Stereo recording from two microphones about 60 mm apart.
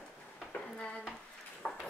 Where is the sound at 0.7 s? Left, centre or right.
Centre.